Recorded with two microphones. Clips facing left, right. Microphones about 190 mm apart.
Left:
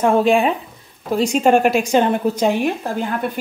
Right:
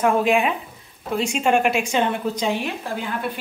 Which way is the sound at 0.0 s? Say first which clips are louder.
Left 4 dB; 30° left (ahead or behind).